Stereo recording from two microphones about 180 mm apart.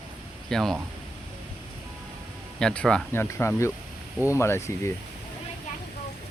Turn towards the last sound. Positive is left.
turn(degrees=15)  # may be behind; listen again after turning